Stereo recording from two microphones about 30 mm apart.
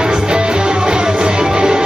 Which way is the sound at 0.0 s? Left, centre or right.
Right.